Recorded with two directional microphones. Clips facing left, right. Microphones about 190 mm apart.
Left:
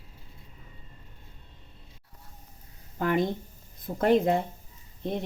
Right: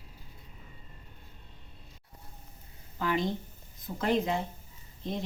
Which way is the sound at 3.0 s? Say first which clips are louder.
Left 5 dB; 55° left (ahead or behind).